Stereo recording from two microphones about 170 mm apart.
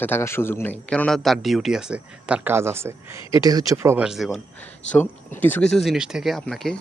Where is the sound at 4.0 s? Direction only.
Centre (ahead or behind).